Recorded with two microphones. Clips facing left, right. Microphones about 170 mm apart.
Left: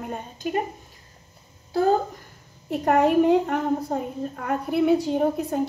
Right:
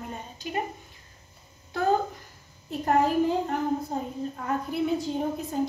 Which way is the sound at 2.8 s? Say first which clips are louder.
Left 5 dB; 70° left (ahead or behind).